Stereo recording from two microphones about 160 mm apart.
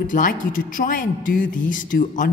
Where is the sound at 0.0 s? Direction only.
55° left (ahead or behind).